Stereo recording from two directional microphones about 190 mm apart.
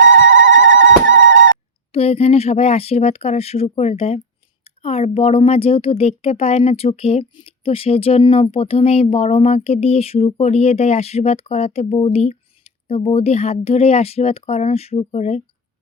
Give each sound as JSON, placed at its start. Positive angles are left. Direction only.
{"t": 0.1, "sound": "telephone bell ringing", "side_deg": -75}
{"t": 1.9, "sound": "speech", "side_deg": 30}